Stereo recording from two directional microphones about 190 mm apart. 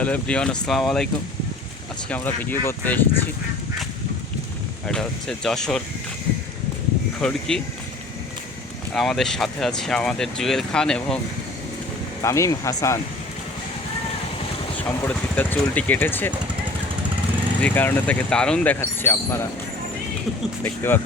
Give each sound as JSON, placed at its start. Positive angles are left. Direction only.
{"t": 0.0, "sound": "speech", "side_deg": 5}
{"t": 2.0, "sound": "speech", "side_deg": 10}
{"t": 4.9, "sound": "speech", "side_deg": 0}
{"t": 7.2, "sound": "speech", "side_deg": 5}
{"t": 8.9, "sound": "speech", "side_deg": 0}
{"t": 12.2, "sound": "speech", "side_deg": 15}
{"t": 14.8, "sound": "speech", "side_deg": 10}
{"t": 17.6, "sound": "speech", "side_deg": 10}
{"t": 20.7, "sound": "speech", "side_deg": 10}